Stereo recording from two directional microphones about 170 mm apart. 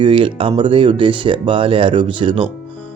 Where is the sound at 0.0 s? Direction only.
30° right (ahead or behind).